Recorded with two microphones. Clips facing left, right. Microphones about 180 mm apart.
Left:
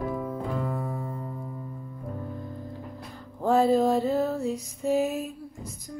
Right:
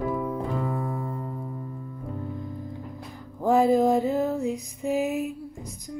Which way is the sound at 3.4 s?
15° right (ahead or behind).